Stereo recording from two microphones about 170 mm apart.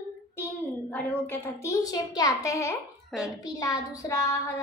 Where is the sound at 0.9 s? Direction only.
10° left (ahead or behind).